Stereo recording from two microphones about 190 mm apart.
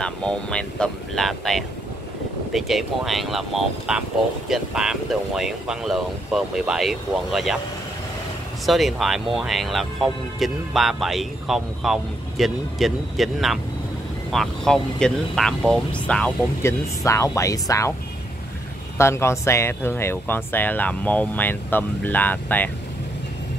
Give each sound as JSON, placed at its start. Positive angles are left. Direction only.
{"t": 0.0, "sound": "speech", "side_deg": 5}
{"t": 8.6, "sound": "speech", "side_deg": 0}
{"t": 17.0, "sound": "speech", "side_deg": 15}
{"t": 18.9, "sound": "speech", "side_deg": 15}